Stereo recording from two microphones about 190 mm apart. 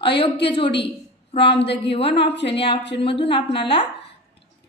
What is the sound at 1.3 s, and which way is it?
Speech, 25° left (ahead or behind).